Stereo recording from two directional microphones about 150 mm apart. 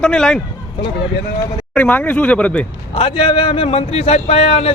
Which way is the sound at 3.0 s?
35° left (ahead or behind).